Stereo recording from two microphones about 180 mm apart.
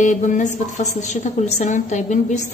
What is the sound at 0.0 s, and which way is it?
A woman's voice, 45° left (ahead or behind).